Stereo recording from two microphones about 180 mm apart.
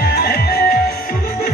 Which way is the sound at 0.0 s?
60° left (ahead or behind).